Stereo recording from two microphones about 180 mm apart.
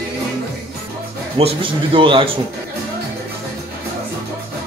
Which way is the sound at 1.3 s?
30° right (ahead or behind).